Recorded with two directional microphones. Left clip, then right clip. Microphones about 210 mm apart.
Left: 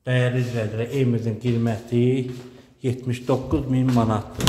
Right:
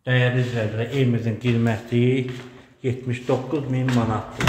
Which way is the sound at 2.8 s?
15° left (ahead or behind).